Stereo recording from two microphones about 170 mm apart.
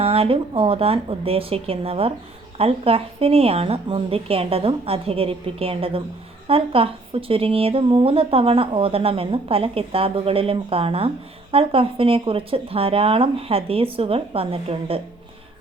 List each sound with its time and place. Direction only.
0.0 s a woman's voice: 35° right (ahead or behind)